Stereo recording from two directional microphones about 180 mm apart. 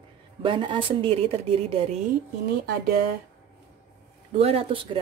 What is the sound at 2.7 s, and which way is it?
Speech, 60° right (ahead or behind).